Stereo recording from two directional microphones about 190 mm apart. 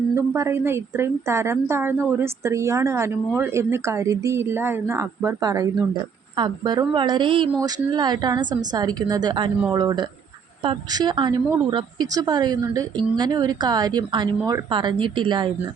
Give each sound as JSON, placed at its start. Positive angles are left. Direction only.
{"t": 0.1, "sound": "a woman's voice", "side_deg": -15}